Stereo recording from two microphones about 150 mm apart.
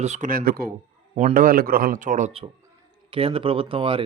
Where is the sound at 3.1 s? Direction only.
40° right (ahead or behind).